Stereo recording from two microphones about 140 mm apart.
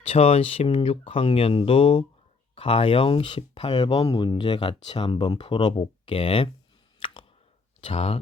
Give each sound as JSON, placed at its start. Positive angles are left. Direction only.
{"t": 0.1, "sound": "speech", "side_deg": 45}
{"t": 7.0, "sound": "plop", "side_deg": 40}
{"t": 7.9, "sound": "speech", "side_deg": 45}